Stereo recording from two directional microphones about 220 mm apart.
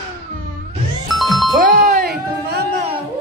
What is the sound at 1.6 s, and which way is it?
Music, 40° right (ahead or behind).